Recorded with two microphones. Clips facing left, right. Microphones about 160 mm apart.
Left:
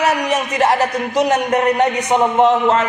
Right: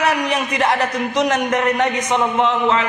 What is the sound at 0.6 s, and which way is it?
A man's voice, 40° left (ahead or behind).